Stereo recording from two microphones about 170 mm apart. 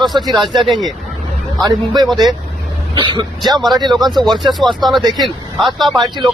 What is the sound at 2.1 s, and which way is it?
Speech, centre (ahead or behind).